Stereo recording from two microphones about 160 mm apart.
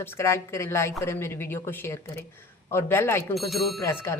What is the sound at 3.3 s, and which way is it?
Speech, centre (ahead or behind).